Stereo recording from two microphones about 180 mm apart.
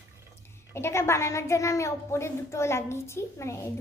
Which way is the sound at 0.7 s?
15° left (ahead or behind).